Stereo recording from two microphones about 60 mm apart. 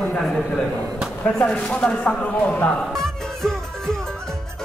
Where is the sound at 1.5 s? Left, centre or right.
Centre.